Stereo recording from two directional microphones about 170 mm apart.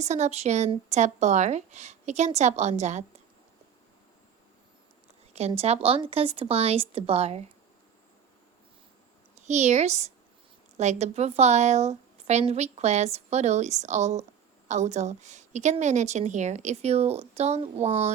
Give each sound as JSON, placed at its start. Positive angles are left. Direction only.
{"t": 0.0, "sound": "a woman's voice", "side_deg": -40}
{"t": 5.3, "sound": "a woman's voice", "side_deg": -35}
{"t": 9.3, "sound": "a woman's voice", "side_deg": -40}